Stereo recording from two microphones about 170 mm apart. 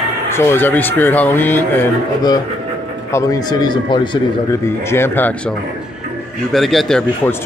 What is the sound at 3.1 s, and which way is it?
Speech, 20° left (ahead or behind).